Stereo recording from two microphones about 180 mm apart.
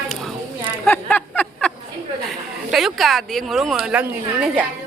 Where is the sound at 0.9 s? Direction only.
10° left (ahead or behind).